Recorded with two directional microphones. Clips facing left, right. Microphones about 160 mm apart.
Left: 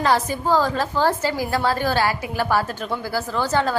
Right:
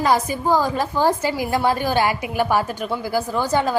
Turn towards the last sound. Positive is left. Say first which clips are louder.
# right 1 dB
turn(degrees=-15)  # may be behind; listen again after turning